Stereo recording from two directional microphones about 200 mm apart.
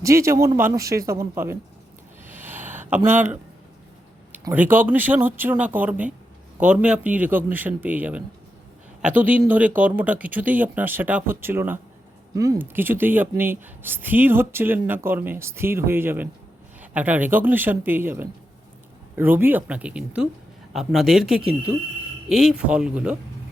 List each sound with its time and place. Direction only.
0.0 s speech: 15° right (ahead or behind)
2.2 s a sound: 10° right (ahead or behind)
4.5 s speech: 10° right (ahead or behind)